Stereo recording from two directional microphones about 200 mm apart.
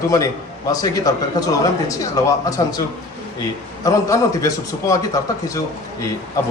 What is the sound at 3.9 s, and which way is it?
A man's voice, 15° left (ahead or behind).